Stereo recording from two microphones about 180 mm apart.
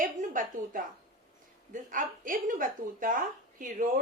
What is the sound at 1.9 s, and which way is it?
A woman's voice, 50° right (ahead or behind).